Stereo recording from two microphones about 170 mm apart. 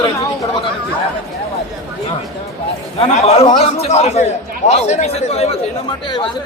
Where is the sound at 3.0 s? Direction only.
40° left (ahead or behind).